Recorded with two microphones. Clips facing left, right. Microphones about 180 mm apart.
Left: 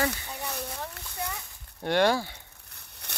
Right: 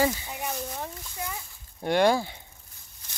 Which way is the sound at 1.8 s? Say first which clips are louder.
Right 2 dB; 10° right (ahead or behind).